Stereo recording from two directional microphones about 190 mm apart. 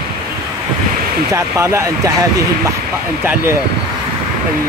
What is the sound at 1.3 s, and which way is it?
Speech, 15° right (ahead or behind).